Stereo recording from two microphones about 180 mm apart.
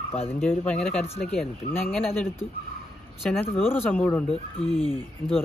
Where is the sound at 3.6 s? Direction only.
10° left (ahead or behind).